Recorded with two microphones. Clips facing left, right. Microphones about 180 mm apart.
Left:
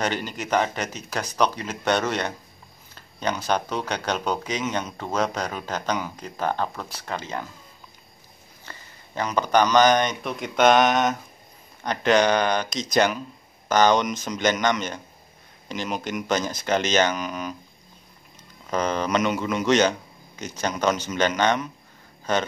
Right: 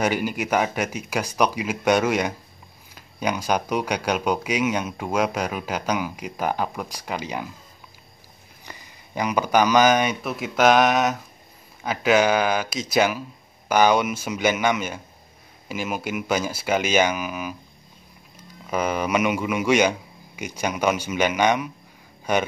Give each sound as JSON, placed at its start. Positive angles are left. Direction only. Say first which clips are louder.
{"t": 0.0, "sound": "speech", "louder": "right 4 dB", "side_deg": -10}
{"t": 8.6, "sound": "speech", "louder": "right 1 dB", "side_deg": -15}
{"t": 18.7, "sound": "speech", "louder": "right 1 dB", "side_deg": -10}